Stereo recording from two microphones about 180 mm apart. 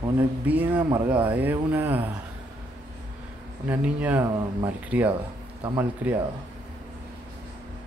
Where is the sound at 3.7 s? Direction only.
10° right (ahead or behind).